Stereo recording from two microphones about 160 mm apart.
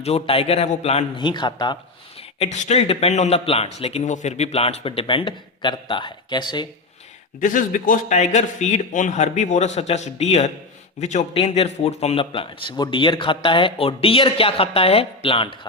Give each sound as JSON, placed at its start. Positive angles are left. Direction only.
{"t": 0.0, "sound": "speech", "side_deg": 40}
{"t": 2.4, "sound": "speech", "side_deg": 45}
{"t": 7.3, "sound": "a man's voice", "side_deg": 55}